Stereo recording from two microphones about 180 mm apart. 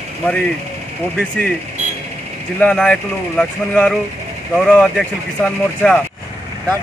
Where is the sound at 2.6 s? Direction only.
5° left (ahead or behind).